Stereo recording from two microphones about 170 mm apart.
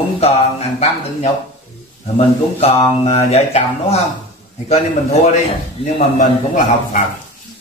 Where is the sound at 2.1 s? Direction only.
35° left (ahead or behind).